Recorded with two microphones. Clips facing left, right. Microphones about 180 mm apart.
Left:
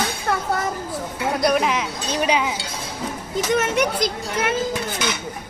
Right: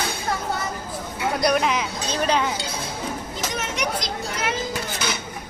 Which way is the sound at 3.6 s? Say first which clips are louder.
Left 6 dB; 60° left (ahead or behind).